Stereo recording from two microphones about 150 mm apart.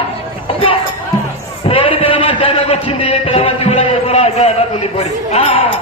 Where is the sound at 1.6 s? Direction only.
35° left (ahead or behind).